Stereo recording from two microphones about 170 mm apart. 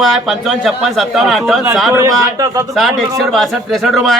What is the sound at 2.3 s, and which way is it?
Speech, 20° right (ahead or behind).